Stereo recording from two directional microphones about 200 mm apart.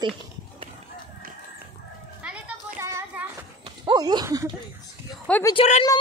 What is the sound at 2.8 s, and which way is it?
Child singing, 15° right (ahead or behind).